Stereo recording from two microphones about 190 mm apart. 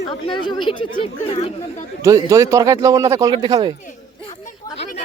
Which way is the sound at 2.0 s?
15° right (ahead or behind).